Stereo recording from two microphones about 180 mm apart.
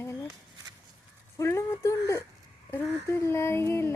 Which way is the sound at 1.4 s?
15° left (ahead or behind).